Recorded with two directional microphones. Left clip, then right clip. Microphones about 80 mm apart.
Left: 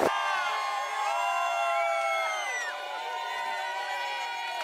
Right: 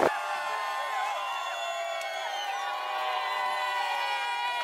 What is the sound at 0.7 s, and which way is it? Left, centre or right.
Music, left.